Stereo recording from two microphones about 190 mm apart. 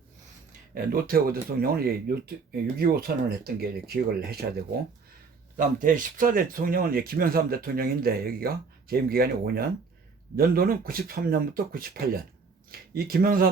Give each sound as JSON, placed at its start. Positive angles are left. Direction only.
{"t": 0.7, "sound": "speech", "side_deg": -50}
{"t": 5.5, "sound": "speech", "side_deg": -45}